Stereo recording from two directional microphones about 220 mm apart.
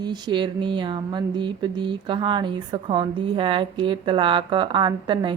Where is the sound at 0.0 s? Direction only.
20° right (ahead or behind).